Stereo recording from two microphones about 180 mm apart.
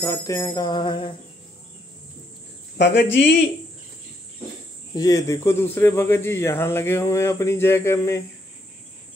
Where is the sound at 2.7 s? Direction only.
75° left (ahead or behind).